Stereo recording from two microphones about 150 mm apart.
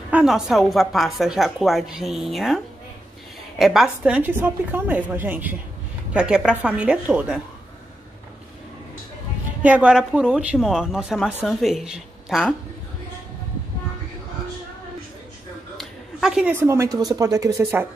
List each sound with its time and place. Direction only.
0.1 s a woman's voice: 5° right (ahead or behind)
9.6 s a woman's voice: 10° right (ahead or behind)
15.8 s a sound: 5° right (ahead or behind)
16.5 s speech: 15° right (ahead or behind)